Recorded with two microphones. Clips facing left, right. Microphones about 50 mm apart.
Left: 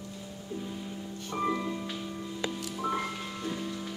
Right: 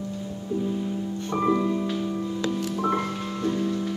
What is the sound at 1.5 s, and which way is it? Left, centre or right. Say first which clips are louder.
Music: right 9 dB; centre.